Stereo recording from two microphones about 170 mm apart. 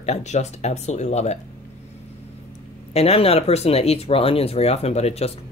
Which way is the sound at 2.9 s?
35° left (ahead or behind).